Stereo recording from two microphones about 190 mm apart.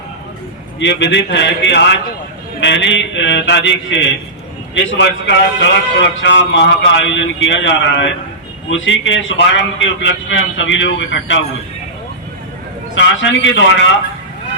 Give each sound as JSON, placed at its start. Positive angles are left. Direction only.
{"t": 0.8, "sound": "a man's voice", "side_deg": 70}
{"t": 12.9, "sound": "a man's voice", "side_deg": 75}